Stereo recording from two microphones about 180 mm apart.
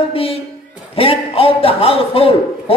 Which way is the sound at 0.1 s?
30° left (ahead or behind).